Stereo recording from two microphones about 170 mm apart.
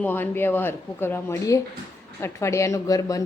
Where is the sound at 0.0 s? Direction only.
10° left (ahead or behind).